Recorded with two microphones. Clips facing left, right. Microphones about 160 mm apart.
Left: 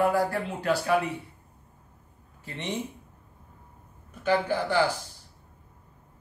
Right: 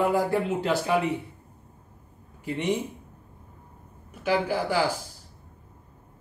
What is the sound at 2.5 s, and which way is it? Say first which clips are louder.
Speech: right 8 dB; 10° right (ahead or behind).